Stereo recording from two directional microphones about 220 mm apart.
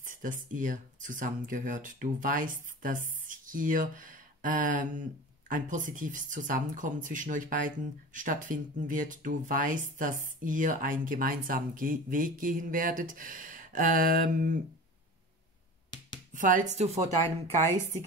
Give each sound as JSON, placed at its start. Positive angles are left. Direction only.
{"t": 0.0, "sound": "speech", "side_deg": -35}
{"t": 15.9, "sound": "a sound", "side_deg": 20}
{"t": 16.3, "sound": "speech", "side_deg": -35}